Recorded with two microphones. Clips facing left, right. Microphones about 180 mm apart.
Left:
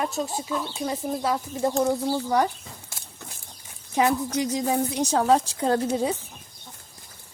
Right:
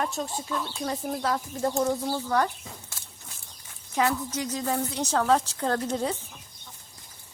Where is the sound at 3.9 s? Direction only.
15° left (ahead or behind).